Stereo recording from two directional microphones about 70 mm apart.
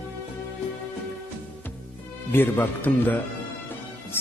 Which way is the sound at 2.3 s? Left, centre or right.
Left.